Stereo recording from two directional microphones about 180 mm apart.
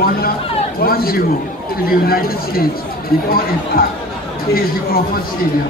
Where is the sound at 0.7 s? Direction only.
55° left (ahead or behind).